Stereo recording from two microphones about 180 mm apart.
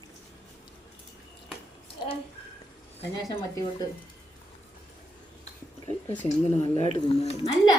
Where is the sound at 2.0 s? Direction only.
25° left (ahead or behind).